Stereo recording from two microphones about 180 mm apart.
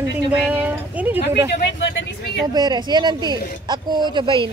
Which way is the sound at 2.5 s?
25° right (ahead or behind).